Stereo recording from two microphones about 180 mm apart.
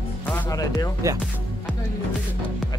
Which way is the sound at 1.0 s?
20° right (ahead or behind).